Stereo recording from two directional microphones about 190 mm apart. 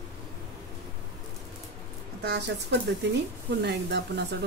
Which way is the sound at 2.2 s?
60° right (ahead or behind).